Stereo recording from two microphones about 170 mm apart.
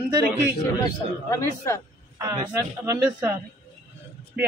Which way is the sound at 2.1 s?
20° right (ahead or behind).